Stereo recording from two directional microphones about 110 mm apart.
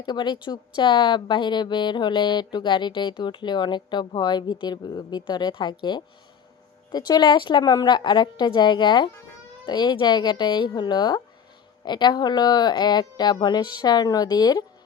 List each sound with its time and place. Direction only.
0.0 s speech: 45° left (ahead or behind)